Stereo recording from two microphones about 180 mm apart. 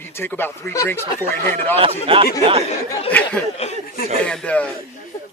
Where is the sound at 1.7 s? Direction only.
35° right (ahead or behind).